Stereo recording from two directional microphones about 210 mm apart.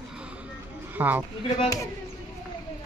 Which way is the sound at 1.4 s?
15° left (ahead or behind).